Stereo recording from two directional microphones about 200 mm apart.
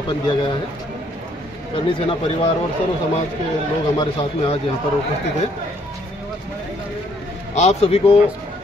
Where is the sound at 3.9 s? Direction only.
25° left (ahead or behind).